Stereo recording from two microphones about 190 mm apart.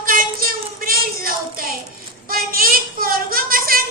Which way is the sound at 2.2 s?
50° right (ahead or behind).